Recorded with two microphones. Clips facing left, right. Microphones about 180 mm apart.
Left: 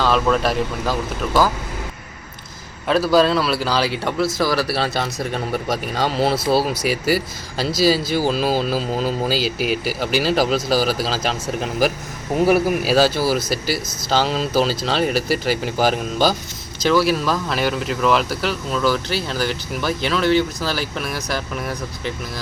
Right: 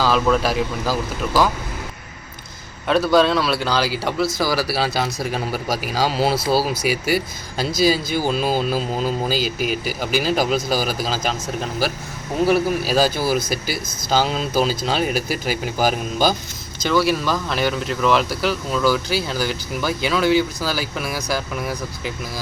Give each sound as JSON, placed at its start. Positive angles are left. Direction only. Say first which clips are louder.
{"t": 0.0, "sound": "speech", "louder": "even", "side_deg": 0}
{"t": 2.8, "sound": "speech", "louder": "even", "side_deg": 0}
{"t": 12.5, "sound": "speech", "louder": "left 2 dB", "side_deg": 10}
{"t": 13.4, "sound": "speech", "louder": "left 2 dB", "side_deg": -50}
{"t": 14.1, "sound": "speech", "louder": "left 1 dB", "side_deg": 0}